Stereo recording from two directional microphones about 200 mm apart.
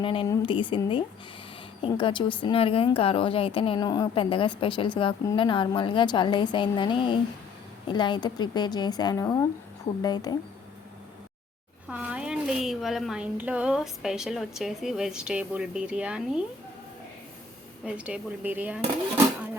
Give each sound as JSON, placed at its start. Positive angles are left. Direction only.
{"t": 0.0, "sound": "speech", "side_deg": 25}
{"t": 11.9, "sound": "speech", "side_deg": -5}
{"t": 17.8, "sound": "speech", "side_deg": -5}